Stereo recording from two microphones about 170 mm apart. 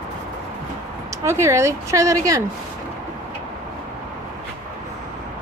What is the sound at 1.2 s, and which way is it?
Speech, 15° right (ahead or behind).